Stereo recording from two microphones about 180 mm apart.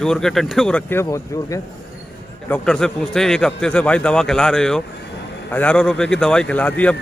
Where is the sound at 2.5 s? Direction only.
5° left (ahead or behind).